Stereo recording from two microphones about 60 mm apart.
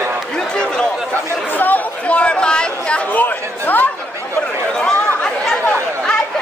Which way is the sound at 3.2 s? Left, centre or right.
Left.